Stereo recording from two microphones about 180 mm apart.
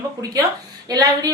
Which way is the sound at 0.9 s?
20° right (ahead or behind).